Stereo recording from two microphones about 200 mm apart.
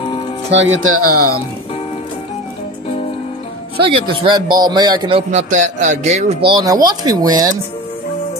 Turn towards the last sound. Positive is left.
turn(degrees=-20)  # may be behind; listen again after turning